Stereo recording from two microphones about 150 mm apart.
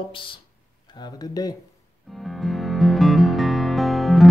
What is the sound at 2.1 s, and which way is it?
Music, centre (ahead or behind).